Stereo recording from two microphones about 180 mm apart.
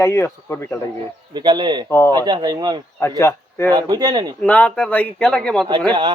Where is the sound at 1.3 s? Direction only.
25° right (ahead or behind).